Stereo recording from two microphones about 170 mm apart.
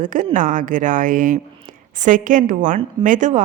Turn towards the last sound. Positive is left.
turn(degrees=-50)  # may be behind; listen again after turning